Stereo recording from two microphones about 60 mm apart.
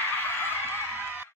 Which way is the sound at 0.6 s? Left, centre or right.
Right.